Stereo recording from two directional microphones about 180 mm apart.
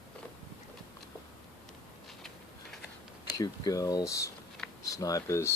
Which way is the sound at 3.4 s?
20° left (ahead or behind).